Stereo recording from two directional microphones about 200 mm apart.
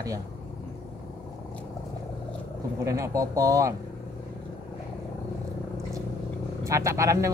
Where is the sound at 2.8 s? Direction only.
15° right (ahead or behind).